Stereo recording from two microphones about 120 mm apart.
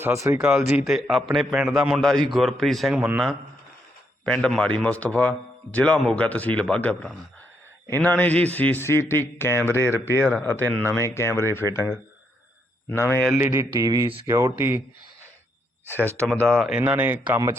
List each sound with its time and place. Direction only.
0.0 s a sound: 20° right (ahead or behind)
0.9 s a man's voice: 5° right (ahead or behind); by 11.8 s 20° left (ahead or behind)
12.9 s a man's voice: 20° left (ahead or behind)
13.4 s a sound: 20° right (ahead or behind)
16.4 s a man's voice: centre (ahead or behind)
16.8 s speech: 15° right (ahead or behind)